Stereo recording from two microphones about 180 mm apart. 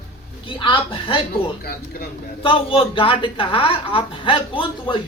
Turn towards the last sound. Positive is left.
turn(degrees=30)  # may be behind; listen again after turning